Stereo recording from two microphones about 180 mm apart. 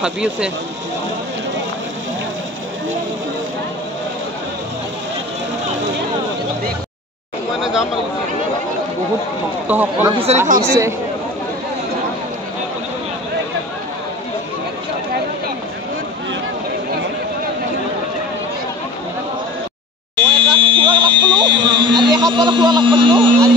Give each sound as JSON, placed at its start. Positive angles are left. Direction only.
{"t": 0.0, "sound": "speech", "side_deg": -5}
{"t": 7.6, "sound": "speech", "side_deg": 0}
{"t": 9.7, "sound": "speech", "side_deg": -10}
{"t": 10.0, "sound": "speech", "side_deg": -30}
{"t": 10.7, "sound": "speech", "side_deg": -15}
{"t": 20.2, "sound": "fire alarm", "side_deg": -25}